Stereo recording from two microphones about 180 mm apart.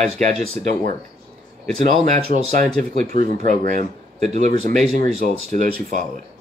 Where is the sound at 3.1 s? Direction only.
45° right (ahead or behind).